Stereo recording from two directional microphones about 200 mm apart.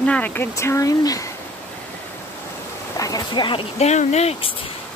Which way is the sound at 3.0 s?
20° left (ahead or behind).